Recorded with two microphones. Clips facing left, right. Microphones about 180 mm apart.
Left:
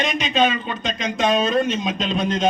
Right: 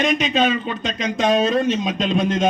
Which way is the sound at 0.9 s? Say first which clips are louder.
Right 2 dB; 35° right (ahead or behind).